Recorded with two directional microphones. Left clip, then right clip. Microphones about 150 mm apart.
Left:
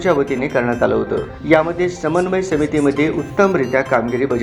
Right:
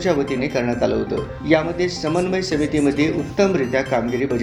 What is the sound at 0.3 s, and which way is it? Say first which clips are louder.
Speech: left 4 dB; 15° right (ahead or behind).